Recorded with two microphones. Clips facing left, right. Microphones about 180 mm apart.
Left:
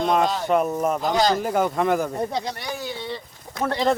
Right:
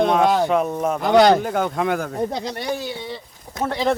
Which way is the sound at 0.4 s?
Centre (ahead or behind).